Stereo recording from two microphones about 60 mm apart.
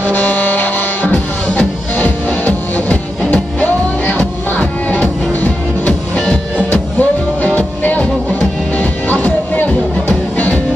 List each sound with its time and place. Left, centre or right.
0.0 s music: left